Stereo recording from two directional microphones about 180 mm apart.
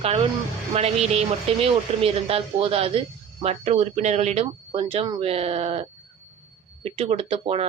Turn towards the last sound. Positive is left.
turn(degrees=-35)  # may be behind; listen again after turning